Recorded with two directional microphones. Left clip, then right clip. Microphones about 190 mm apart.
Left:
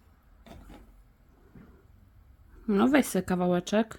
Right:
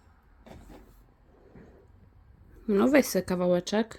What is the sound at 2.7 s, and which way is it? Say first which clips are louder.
Speech: right 2 dB; 20° left (ahead or behind).